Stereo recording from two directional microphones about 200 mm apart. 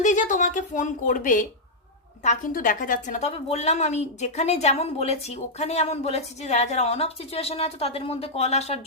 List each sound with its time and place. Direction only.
0.0 s a woman's voice: 40° left (ahead or behind)